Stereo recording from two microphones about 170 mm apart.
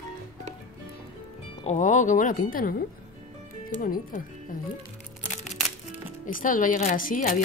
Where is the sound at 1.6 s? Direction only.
45° left (ahead or behind).